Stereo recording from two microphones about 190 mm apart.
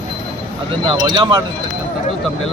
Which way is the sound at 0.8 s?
25° right (ahead or behind).